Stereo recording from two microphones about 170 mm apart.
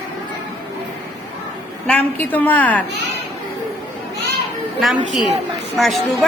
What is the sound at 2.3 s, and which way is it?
Speech, 10° left (ahead or behind).